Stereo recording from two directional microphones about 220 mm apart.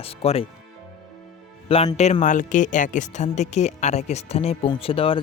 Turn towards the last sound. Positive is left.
turn(degrees=25)  # may be behind; listen again after turning